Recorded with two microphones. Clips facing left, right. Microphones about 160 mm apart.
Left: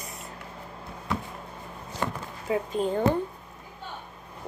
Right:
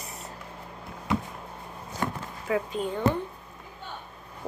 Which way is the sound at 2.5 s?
25° left (ahead or behind).